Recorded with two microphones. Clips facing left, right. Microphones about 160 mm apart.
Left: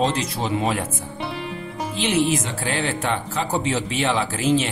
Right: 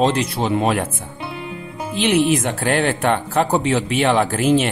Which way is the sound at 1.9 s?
60° right (ahead or behind).